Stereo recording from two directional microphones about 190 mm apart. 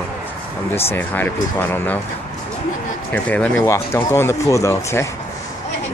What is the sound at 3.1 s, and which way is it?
Speech, 10° left (ahead or behind).